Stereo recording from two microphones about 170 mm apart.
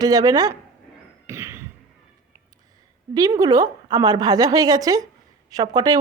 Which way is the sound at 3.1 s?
20° right (ahead or behind).